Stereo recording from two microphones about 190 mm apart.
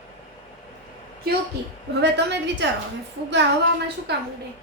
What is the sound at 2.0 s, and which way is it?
Speech, 65° right (ahead or behind).